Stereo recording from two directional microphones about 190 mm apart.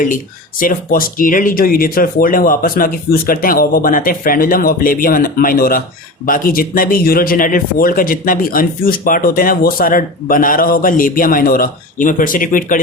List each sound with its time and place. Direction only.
0.6 s speech: 50° left (ahead or behind)